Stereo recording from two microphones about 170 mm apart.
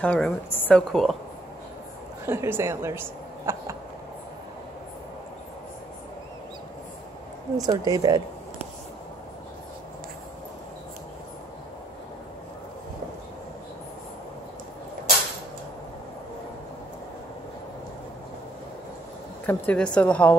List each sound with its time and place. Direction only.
0.0 s a woman's voice: 10° left (ahead or behind)
2.2 s a woman's voice: 15° right (ahead or behind)
7.5 s speech: 20° right (ahead or behind)
19.4 s a woman's voice: 10° left (ahead or behind)